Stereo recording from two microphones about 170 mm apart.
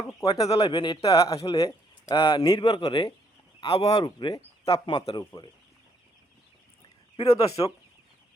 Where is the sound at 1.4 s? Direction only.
20° left (ahead or behind).